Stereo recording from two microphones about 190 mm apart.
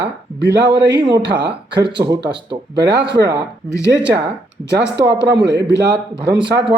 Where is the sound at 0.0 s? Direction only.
65° right (ahead or behind).